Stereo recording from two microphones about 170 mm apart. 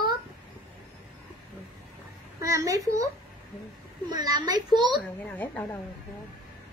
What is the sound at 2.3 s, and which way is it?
Speech, 20° right (ahead or behind).